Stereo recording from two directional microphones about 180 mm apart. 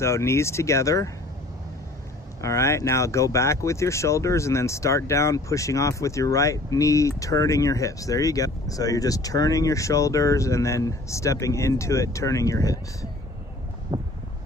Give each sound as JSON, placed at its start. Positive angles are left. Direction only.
{"t": 0.0, "sound": "speech", "side_deg": 15}
{"t": 2.4, "sound": "speech", "side_deg": 15}
{"t": 13.9, "sound": "wind noise", "side_deg": -20}